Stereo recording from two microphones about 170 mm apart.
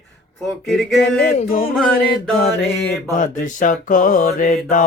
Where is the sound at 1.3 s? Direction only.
55° left (ahead or behind).